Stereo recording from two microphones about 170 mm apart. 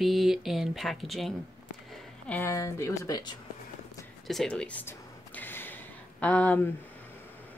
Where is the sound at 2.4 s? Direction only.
15° left (ahead or behind).